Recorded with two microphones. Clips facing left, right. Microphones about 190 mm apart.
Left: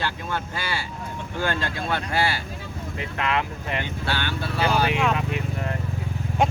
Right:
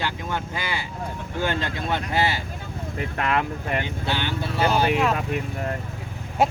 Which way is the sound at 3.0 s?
45° right (ahead or behind).